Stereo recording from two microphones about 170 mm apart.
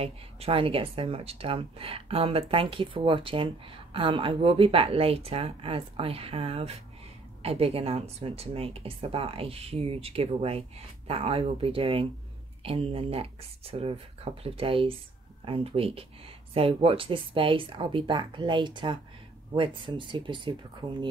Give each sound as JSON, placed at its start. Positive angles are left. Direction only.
{"t": 0.0, "sound": "speech", "side_deg": -35}